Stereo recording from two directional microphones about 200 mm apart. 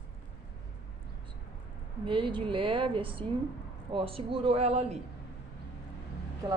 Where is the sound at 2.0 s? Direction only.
25° right (ahead or behind).